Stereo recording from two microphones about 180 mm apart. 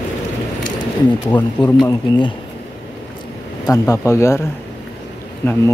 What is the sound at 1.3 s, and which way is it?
Speech, 10° left (ahead or behind).